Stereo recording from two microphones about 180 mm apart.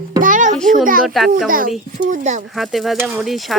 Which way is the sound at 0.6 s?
Centre (ahead or behind).